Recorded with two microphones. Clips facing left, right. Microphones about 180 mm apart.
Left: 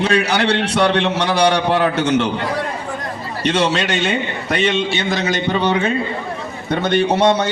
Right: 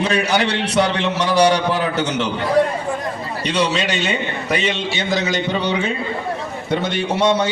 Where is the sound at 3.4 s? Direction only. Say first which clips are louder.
Left 2 dB; 55° left (ahead or behind).